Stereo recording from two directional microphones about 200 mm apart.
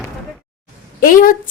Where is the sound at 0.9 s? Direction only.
45° left (ahead or behind).